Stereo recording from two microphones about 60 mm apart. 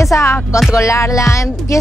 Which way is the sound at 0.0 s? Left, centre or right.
Left.